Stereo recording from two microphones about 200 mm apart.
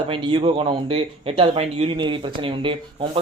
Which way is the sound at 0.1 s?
25° right (ahead or behind).